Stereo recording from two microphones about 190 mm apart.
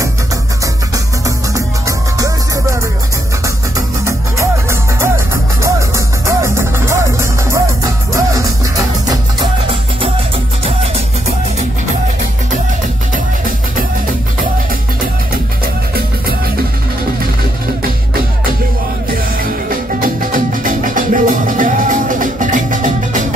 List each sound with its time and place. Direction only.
0.9 s music: 15° right (ahead or behind)
15.6 s music: 50° right (ahead or behind)
19.4 s music: 50° right (ahead or behind)